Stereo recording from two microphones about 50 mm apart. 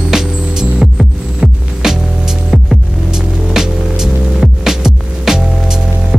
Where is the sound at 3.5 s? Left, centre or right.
Centre.